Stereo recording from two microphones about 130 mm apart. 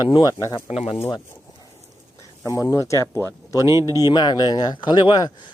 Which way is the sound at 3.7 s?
25° right (ahead or behind).